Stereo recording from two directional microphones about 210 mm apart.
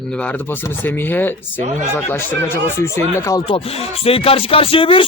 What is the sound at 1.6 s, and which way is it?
Speech, 35° right (ahead or behind).